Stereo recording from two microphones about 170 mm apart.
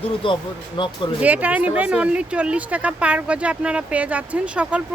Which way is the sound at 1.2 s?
10° right (ahead or behind).